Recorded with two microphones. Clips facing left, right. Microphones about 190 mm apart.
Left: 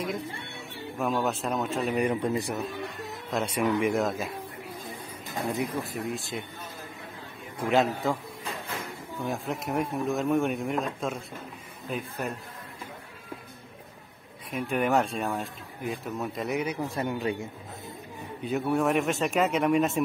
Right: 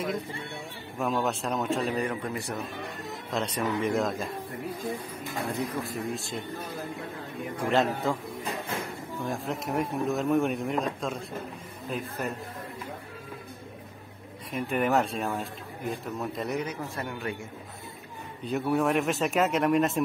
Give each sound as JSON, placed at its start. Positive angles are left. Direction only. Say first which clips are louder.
{"t": 0.9, "sound": "speech", "louder": "even", "side_deg": 0}
{"t": 2.0, "sound": "a man's voice", "louder": "left 4 dB", "side_deg": 20}
{"t": 3.1, "sound": "speech", "louder": "even", "side_deg": 5}
{"t": 5.8, "sound": "speech", "louder": "even", "side_deg": 0}
{"t": 7.7, "sound": "speech", "louder": "left 1 dB", "side_deg": 0}
{"t": 9.2, "sound": "speech", "louder": "left 1 dB", "side_deg": 0}
{"t": 14.5, "sound": "speech", "louder": "even", "side_deg": 0}
{"t": 16.5, "sound": "a man's voice", "louder": "left 3 dB", "side_deg": 15}
{"t": 18.5, "sound": "speech", "louder": "even", "side_deg": 0}